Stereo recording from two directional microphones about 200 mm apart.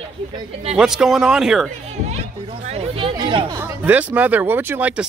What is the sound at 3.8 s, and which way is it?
Speech, 10° right (ahead or behind).